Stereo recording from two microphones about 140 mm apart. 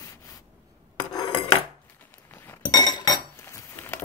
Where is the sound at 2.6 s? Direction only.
25° left (ahead or behind).